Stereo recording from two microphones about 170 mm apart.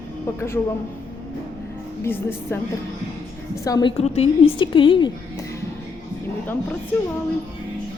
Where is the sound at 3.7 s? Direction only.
25° left (ahead or behind).